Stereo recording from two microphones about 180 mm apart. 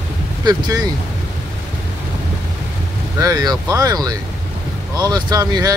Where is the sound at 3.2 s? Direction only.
20° right (ahead or behind).